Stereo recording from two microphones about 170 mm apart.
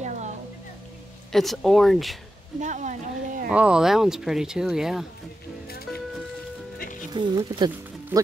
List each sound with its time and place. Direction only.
1.3 s speech: centre (ahead or behind)
2.6 s a sound: 45° right (ahead or behind)
3.4 s speech: 5° right (ahead or behind)
5.7 s music: 65° left (ahead or behind)
6.8 s music: 50° left (ahead or behind)
7.1 s speech: 25° right (ahead or behind)